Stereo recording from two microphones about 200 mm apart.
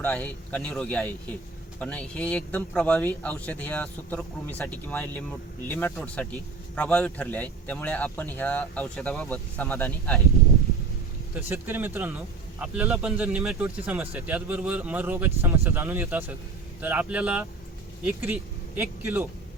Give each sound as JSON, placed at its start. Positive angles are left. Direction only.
{"t": 0.0, "sound": "a man's voice", "side_deg": 10}
{"t": 11.3, "sound": "speech", "side_deg": -10}